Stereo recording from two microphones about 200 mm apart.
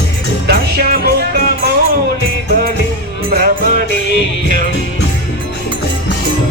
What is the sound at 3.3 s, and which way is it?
Music, 50° right (ahead or behind).